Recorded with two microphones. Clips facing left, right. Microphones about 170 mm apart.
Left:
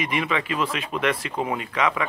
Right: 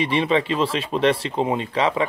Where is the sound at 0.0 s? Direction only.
30° right (ahead or behind).